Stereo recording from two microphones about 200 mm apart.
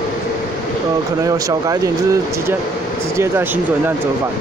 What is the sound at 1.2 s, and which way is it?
Speech, 15° right (ahead or behind).